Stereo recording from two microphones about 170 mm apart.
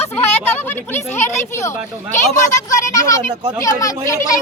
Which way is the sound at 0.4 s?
15° left (ahead or behind).